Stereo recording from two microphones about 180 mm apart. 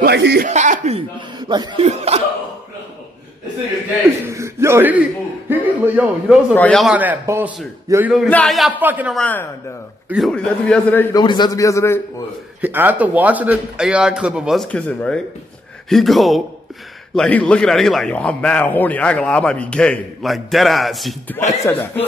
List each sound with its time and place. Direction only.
0.0 s speech: 65° right (ahead or behind)
0.5 s speech: 40° right (ahead or behind)
1.5 s speech: 25° right (ahead or behind)
1.9 s speech: 35° right (ahead or behind)
4.3 s a sound: 15° right (ahead or behind)
5.5 s a man's voice: 5° right (ahead or behind)
6.5 s a man's voice: 5° left (ahead or behind); by 9.1 s 10° right (ahead or behind)
9.1 s a man's voice: 10° left (ahead or behind)
11.1 s a man's voice: 25° left (ahead or behind)
12.6 s a man's voice: 10° right (ahead or behind)
21.6 s speech: 10° left (ahead or behind)